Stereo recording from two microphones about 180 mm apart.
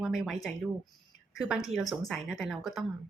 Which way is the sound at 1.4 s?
5° right (ahead or behind).